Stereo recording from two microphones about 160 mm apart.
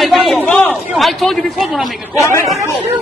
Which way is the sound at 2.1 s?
20° left (ahead or behind).